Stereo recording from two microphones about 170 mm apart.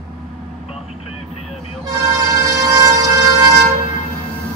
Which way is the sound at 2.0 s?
15° right (ahead or behind).